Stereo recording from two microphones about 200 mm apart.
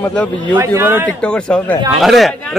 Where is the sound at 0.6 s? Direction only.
10° right (ahead or behind).